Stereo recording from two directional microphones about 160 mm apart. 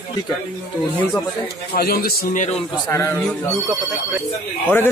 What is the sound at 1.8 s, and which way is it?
Speech, 70° left (ahead or behind).